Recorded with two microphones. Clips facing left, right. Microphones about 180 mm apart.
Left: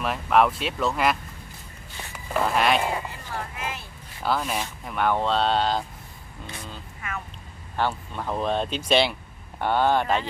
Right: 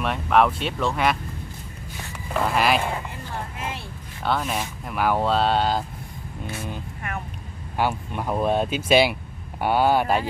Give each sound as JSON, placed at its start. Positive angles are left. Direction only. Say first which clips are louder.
{"t": 0.0, "sound": "speech", "louder": "right 1 dB", "side_deg": 0}
{"t": 2.3, "sound": "speech", "louder": "right 1 dB", "side_deg": 0}
{"t": 4.2, "sound": "speech", "louder": "right 1 dB", "side_deg": 0}
{"t": 7.7, "sound": "speech", "louder": "right 2 dB", "side_deg": -10}